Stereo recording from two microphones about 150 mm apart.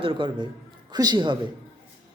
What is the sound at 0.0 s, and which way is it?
Speech, 35° right (ahead or behind).